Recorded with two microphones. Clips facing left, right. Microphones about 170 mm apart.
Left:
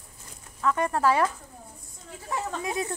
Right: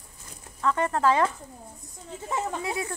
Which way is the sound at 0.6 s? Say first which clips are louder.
Even; 10° left (ahead or behind).